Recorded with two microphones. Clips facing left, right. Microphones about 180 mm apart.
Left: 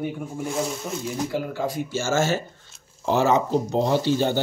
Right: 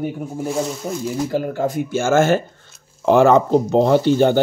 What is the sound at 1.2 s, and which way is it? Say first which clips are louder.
A man's voice: right 6 dB; 50° right (ahead or behind).